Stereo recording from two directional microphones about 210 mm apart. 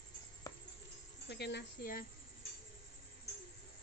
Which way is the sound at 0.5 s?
15° left (ahead or behind).